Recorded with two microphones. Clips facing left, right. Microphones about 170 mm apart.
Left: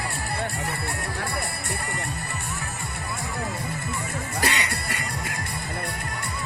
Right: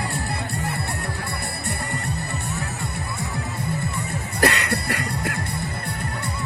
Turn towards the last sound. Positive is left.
turn(degrees=-65)  # may be behind; listen again after turning